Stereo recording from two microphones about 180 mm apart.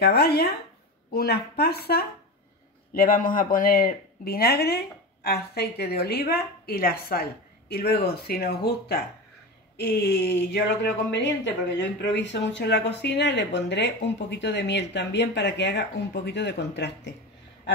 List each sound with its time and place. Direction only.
0.0 s a woman's voice: 60° left (ahead or behind)